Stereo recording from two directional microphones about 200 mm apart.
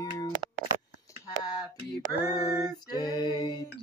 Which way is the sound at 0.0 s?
20° left (ahead or behind).